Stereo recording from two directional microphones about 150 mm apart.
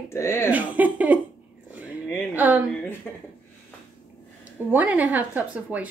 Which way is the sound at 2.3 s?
10° right (ahead or behind).